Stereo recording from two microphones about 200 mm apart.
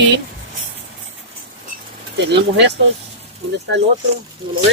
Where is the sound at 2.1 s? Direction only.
60° right (ahead or behind).